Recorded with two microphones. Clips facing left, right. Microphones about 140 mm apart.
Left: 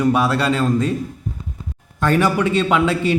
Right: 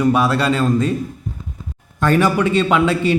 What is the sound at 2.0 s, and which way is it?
A man's voice, 10° left (ahead or behind).